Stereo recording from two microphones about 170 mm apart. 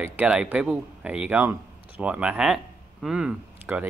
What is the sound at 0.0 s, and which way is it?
Speech, 10° right (ahead or behind).